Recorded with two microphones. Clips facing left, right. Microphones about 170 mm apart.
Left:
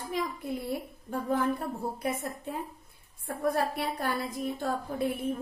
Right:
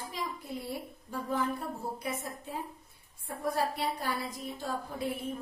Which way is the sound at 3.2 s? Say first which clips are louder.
Left 3 dB; 60° left (ahead or behind).